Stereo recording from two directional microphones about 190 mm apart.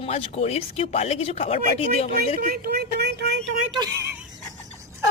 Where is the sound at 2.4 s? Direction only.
55° right (ahead or behind).